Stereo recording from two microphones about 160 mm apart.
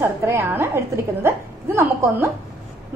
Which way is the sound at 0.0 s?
15° right (ahead or behind).